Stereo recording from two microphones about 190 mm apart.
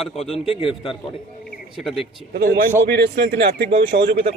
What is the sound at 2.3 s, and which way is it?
A man's voice, 55° right (ahead or behind).